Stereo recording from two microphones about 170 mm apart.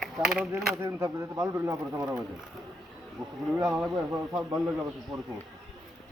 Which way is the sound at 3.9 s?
20° right (ahead or behind).